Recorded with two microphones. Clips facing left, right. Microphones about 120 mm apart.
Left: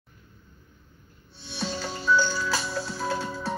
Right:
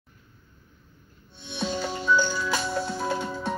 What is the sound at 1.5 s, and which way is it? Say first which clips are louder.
Music: right 3 dB; 20° right (ahead or behind).